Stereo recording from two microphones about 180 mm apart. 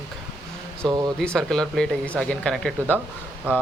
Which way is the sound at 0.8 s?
20° right (ahead or behind).